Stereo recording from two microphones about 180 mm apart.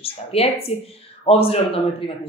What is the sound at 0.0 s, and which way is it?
Speech, 35° left (ahead or behind).